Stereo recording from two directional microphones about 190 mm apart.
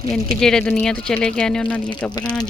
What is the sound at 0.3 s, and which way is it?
Speech, 5° left (ahead or behind).